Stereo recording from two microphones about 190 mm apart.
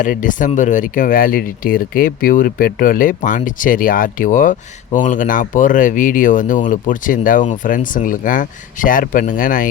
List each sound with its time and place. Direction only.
0.0 s speech: 45° left (ahead or behind)